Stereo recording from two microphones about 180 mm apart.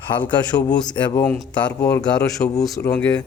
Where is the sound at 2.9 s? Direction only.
5° left (ahead or behind).